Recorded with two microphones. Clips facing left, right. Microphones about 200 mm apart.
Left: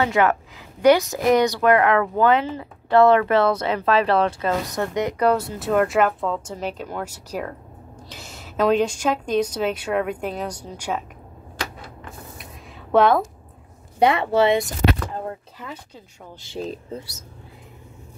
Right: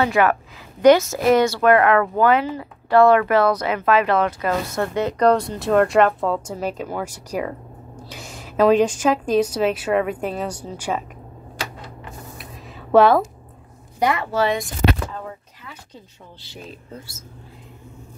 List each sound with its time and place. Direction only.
0.0 s speech: 20° left (ahead or behind)
4.6 s speech: 15° left (ahead or behind)
6.4 s a woman's voice: 10° right (ahead or behind)
12.9 s speech: 5° right (ahead or behind)
13.9 s speech: 25° left (ahead or behind)
16.5 s speech: 30° left (ahead or behind)